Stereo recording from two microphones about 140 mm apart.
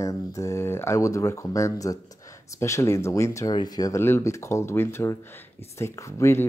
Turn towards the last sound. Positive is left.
turn(degrees=20)  # may be behind; listen again after turning